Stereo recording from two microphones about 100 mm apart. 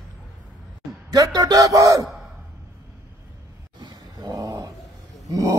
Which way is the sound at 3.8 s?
45° right (ahead or behind).